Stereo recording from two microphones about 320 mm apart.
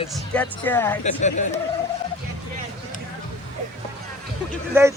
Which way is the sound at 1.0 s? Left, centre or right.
Left.